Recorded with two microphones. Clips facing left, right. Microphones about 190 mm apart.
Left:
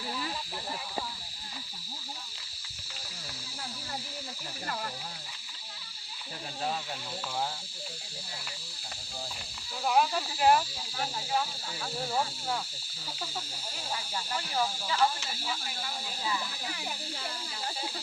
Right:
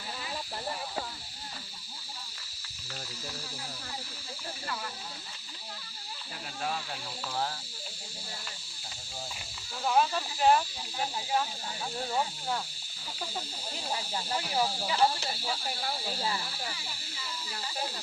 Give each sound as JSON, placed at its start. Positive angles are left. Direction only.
{"t": 9.8, "sound": "speech", "side_deg": 0}
{"t": 14.3, "sound": "speech", "side_deg": -15}
{"t": 14.9, "sound": "speech", "side_deg": -35}
{"t": 16.7, "sound": "music", "side_deg": 60}